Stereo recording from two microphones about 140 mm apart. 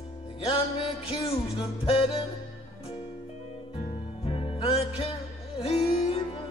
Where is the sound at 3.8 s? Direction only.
40° left (ahead or behind).